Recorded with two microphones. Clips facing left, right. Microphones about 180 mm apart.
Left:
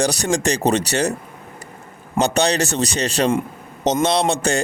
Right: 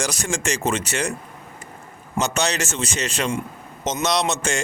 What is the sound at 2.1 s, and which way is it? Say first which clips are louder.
Speech: left 5 dB; 35° left (ahead or behind).